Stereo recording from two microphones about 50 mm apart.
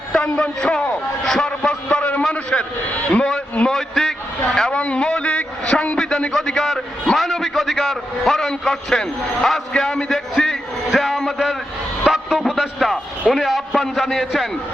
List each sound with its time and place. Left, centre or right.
0.1 s a man's voice: centre
1.2 s a sound: centre
1.9 s a man's voice: left
3.7 s a man's voice: centre
4.7 s a man's voice: left; by 11.5 s centre
12.0 s a sound: centre
12.5 s a man's voice: centre